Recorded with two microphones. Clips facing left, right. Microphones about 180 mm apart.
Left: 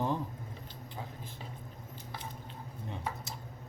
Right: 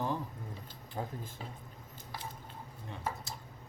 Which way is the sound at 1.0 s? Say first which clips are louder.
Right 6 dB; 50° right (ahead or behind).